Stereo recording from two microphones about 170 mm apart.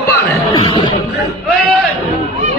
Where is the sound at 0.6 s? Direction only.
30° left (ahead or behind).